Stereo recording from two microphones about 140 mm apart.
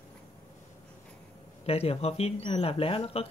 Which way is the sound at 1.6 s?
45° left (ahead or behind).